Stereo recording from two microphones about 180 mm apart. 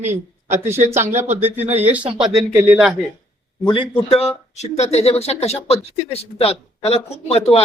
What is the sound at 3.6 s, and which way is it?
Speech, 30° left (ahead or behind).